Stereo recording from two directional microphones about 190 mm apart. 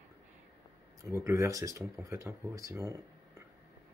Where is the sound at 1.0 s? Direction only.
15° right (ahead or behind).